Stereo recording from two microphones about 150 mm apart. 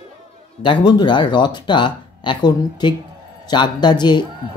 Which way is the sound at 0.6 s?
30° left (ahead or behind).